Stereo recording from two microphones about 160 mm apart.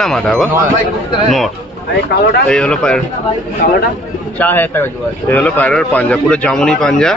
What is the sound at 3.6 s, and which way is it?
Speech, 70° left (ahead or behind).